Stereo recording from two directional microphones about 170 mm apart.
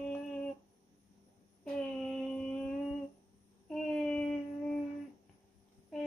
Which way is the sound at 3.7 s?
5° left (ahead or behind).